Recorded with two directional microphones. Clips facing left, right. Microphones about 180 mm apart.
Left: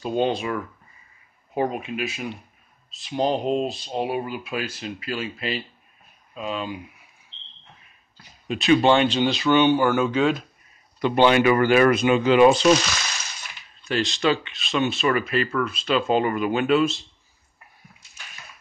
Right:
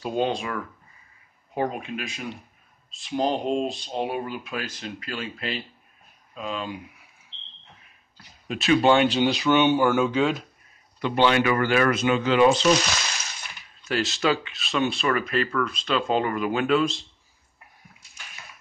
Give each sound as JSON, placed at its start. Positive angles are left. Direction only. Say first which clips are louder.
{"t": 0.0, "sound": "speech", "louder": "left 2 dB", "side_deg": 0}
{"t": 8.5, "sound": "speech", "louder": "left 2 dB", "side_deg": 0}
{"t": 11.0, "sound": "speech", "louder": "left 3 dB", "side_deg": 15}
{"t": 13.8, "sound": "speech", "louder": "left 2 dB", "side_deg": -5}